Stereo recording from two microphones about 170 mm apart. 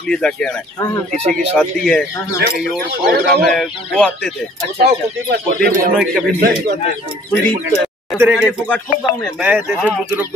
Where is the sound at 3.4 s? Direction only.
Centre (ahead or behind).